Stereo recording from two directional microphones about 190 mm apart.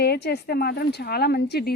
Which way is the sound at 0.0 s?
60° left (ahead or behind).